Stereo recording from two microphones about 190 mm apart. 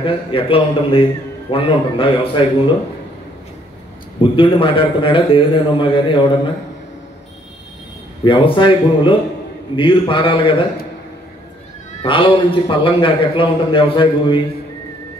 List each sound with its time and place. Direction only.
0.0 s a man's voice: 30° left (ahead or behind)
4.2 s a man's voice: 25° left (ahead or behind)
8.2 s a man's voice: 25° left (ahead or behind)
12.0 s a man's voice: 25° left (ahead or behind)